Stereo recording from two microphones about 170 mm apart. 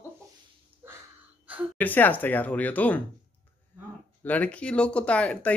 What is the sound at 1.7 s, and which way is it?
Speech, 10° left (ahead or behind).